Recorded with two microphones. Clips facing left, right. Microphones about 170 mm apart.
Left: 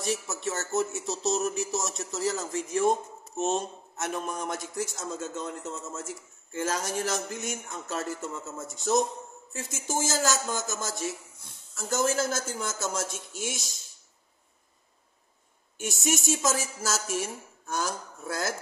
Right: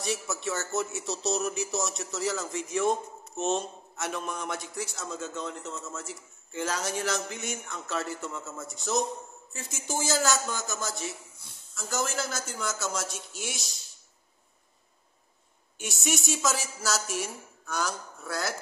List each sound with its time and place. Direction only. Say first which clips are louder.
0.0 s speech: left 1 dB; 45° left (ahead or behind)
16.0 s speech: left 2 dB; 45° left (ahead or behind)